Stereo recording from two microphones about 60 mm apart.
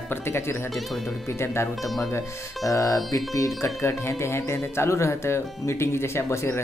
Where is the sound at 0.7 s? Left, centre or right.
Centre.